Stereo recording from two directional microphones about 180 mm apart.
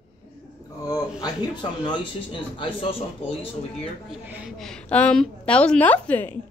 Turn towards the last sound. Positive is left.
turn(degrees=10)  # may be behind; listen again after turning